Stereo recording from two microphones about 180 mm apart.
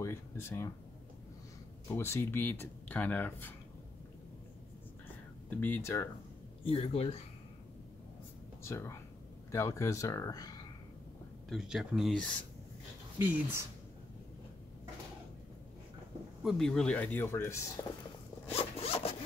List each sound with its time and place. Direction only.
0.0 s speech: 15° left (ahead or behind)
1.9 s speech: 15° left (ahead or behind)
5.5 s speech: 10° left (ahead or behind)
6.6 s speech: 35° left (ahead or behind)
8.6 s speech: 15° left (ahead or behind)
11.4 s speech: centre (ahead or behind)
13.2 s speech: 10° right (ahead or behind)
16.4 s speech: centre (ahead or behind)
18.5 s zipper: 35° left (ahead or behind)